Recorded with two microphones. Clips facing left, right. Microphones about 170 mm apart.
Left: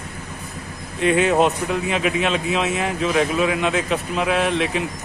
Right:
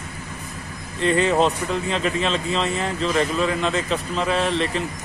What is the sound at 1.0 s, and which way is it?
Speech, 5° left (ahead or behind).